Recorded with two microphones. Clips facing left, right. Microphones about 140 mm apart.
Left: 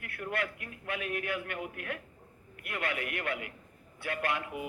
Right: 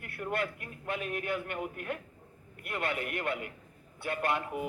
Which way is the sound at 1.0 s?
35° right (ahead or behind).